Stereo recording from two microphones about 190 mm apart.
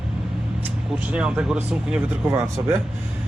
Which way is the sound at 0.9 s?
5° right (ahead or behind).